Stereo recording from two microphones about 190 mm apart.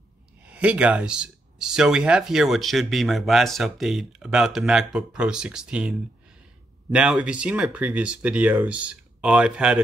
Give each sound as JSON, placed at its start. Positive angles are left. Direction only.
{"t": 0.4, "sound": "speech", "side_deg": -5}